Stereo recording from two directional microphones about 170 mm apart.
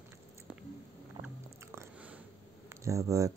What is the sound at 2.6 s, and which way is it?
Speech, 20° right (ahead or behind).